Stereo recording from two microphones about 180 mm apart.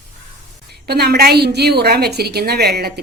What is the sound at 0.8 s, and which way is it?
A woman's voice, 60° right (ahead or behind).